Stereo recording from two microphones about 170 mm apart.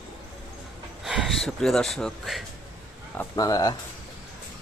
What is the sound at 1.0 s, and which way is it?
Speech, centre (ahead or behind).